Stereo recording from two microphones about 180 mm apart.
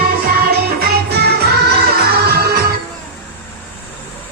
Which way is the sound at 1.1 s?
65° right (ahead or behind).